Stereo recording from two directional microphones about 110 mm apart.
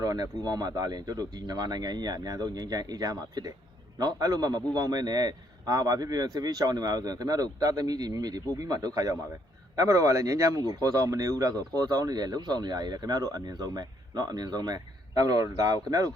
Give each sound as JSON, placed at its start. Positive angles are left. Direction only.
{"t": 0.0, "sound": "speech", "side_deg": -35}